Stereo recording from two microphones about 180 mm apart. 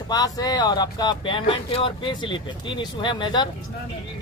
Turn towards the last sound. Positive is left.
turn(degrees=25)  # may be behind; listen again after turning